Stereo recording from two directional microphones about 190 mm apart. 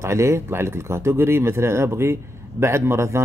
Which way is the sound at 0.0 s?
15° right (ahead or behind).